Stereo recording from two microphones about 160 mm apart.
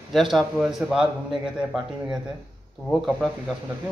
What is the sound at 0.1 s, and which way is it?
Speech, centre (ahead or behind).